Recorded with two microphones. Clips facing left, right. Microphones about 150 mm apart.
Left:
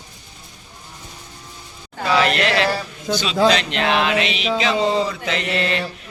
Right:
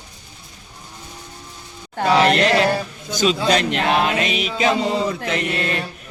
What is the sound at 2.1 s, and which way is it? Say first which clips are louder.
Speech: right 2 dB; 40° right (ahead or behind).